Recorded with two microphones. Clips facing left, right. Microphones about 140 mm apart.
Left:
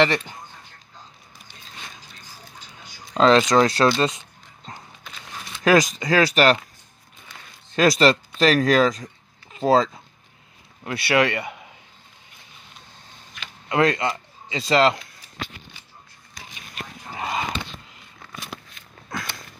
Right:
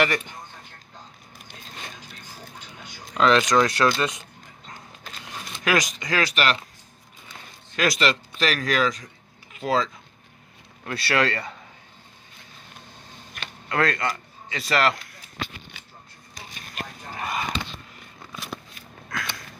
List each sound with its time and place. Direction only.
3.2 s speech: 30° left (ahead or behind)
5.6 s speech: 30° left (ahead or behind)
7.7 s speech: 35° left (ahead or behind)
10.9 s speech: 15° left (ahead or behind)
13.7 s a man's voice: 20° left (ahead or behind)
17.1 s a sound: 20° left (ahead or behind)